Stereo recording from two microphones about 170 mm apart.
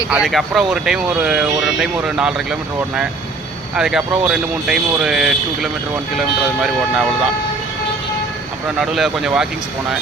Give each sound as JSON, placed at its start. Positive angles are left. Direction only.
{"t": 0.1, "sound": "speech", "side_deg": -5}
{"t": 8.8, "sound": "speech", "side_deg": 0}